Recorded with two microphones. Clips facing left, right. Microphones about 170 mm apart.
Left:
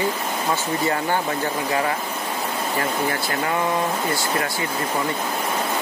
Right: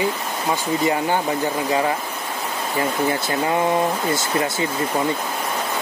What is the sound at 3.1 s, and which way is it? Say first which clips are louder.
Speech: right 3 dB; 20° right (ahead or behind).